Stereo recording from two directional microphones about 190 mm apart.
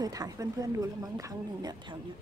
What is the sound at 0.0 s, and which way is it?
Speech, 20° right (ahead or behind).